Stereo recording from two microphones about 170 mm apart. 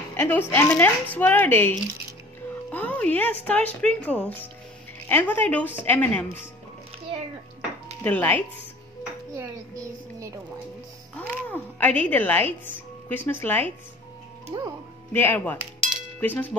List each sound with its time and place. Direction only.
0.1 s a woman's voice: 10° left (ahead or behind)
8.0 s a woman's voice: 10° left (ahead or behind)
9.4 s a child's voice: 15° right (ahead or behind)
11.1 s a woman's voice: 10° left (ahead or behind)
14.5 s speech: 30° right (ahead or behind)
15.1 s a woman's voice: 10° left (ahead or behind)